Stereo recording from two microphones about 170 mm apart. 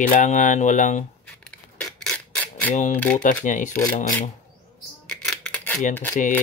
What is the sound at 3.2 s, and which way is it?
Speech, 50° left (ahead or behind).